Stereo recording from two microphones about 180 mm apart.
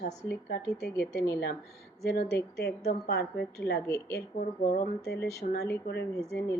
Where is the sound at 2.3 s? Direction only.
60° left (ahead or behind).